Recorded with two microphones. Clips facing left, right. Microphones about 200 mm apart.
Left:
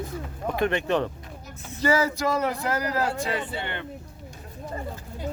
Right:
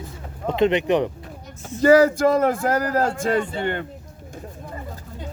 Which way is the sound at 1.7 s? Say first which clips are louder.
Right 9 dB; 50° right (ahead or behind).